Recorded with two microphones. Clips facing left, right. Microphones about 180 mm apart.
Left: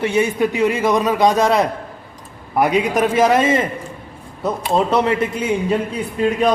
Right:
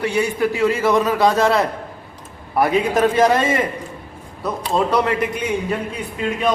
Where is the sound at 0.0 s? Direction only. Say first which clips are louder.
Left 2 dB; 20° left (ahead or behind).